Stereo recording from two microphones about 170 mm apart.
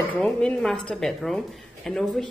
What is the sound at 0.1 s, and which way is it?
Speech, 5° left (ahead or behind).